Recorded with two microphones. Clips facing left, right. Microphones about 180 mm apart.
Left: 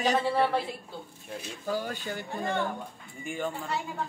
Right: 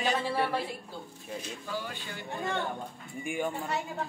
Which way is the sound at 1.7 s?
45° left (ahead or behind).